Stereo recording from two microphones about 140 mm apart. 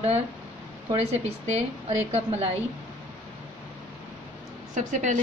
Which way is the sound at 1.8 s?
50° right (ahead or behind).